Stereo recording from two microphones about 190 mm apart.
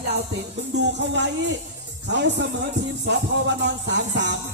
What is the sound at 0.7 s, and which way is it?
Music, 65° right (ahead or behind).